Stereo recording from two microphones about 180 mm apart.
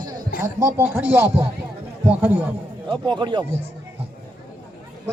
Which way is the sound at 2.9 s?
25° right (ahead or behind).